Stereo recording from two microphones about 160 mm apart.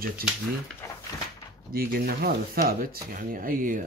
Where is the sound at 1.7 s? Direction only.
70° right (ahead or behind).